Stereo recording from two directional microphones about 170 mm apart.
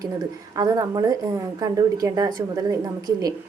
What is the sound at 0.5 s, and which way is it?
A woman's voice, 20° right (ahead or behind).